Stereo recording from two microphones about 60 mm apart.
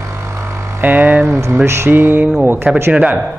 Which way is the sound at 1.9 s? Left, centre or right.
Right.